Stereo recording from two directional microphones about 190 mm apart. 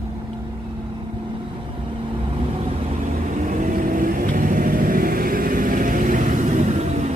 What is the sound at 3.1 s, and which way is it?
Vehicle, 40° right (ahead or behind).